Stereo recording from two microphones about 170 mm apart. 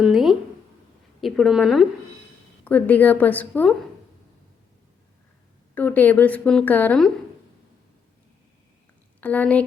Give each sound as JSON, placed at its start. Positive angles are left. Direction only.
{"t": 0.0, "sound": "a sound", "side_deg": 0}
{"t": 1.2, "sound": "a woman's voice", "side_deg": 0}
{"t": 2.6, "sound": "a woman's voice", "side_deg": 10}
{"t": 5.7, "sound": "a woman's voice", "side_deg": 10}
{"t": 9.2, "sound": "a woman's voice", "side_deg": 10}